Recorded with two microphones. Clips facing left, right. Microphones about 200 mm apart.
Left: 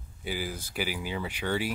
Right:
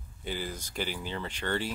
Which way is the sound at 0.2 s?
10° left (ahead or behind).